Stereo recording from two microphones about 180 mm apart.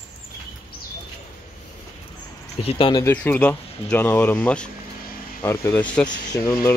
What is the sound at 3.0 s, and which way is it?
Speech, 10° left (ahead or behind).